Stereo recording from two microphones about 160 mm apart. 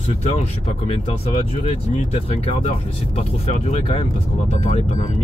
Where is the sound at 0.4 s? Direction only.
40° left (ahead or behind).